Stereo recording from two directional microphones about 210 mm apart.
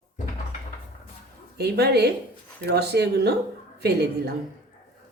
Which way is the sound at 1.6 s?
50° right (ahead or behind).